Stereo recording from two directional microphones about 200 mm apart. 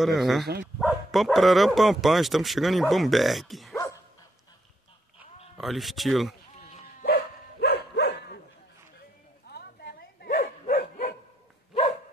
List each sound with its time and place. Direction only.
0.0 s speech: centre (ahead or behind)
3.7 s dog: 15° left (ahead or behind)
5.6 s speech: centre (ahead or behind)
7.6 s dog: 55° left (ahead or behind)
9.5 s bow-wow: 50° left (ahead or behind)